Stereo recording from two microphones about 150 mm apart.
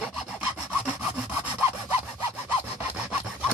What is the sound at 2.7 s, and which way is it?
Sawing, 5° right (ahead or behind).